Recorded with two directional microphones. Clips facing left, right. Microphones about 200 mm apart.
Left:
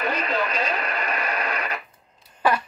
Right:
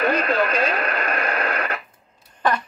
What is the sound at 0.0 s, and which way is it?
Radio, 55° right (ahead or behind).